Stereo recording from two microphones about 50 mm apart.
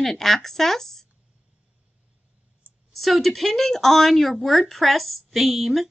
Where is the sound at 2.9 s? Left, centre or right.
Centre.